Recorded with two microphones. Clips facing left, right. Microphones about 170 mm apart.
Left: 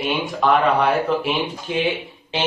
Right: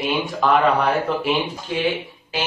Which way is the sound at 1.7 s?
20° left (ahead or behind).